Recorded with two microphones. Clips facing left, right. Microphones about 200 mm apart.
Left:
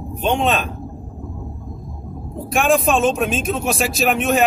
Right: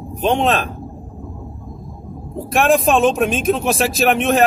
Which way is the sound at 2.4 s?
Centre (ahead or behind).